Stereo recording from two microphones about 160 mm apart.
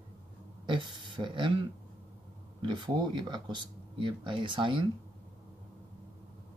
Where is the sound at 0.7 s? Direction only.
30° right (ahead or behind).